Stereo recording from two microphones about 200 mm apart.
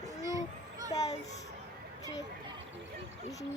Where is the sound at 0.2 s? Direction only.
15° right (ahead or behind).